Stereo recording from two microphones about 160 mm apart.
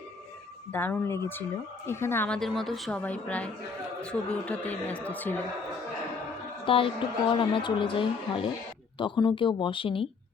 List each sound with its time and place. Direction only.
0.7 s a woman's voice: 10° left (ahead or behind)
6.7 s a woman's voice: 35° left (ahead or behind)